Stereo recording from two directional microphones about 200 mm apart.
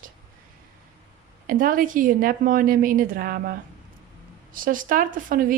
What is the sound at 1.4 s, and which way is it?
A woman's voice, 45° right (ahead or behind).